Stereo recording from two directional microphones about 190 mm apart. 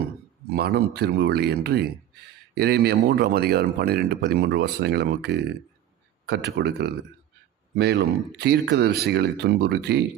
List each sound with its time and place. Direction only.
0.5 s speech: 55° right (ahead or behind)